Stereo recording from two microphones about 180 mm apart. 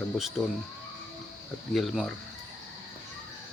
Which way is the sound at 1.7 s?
Centre (ahead or behind).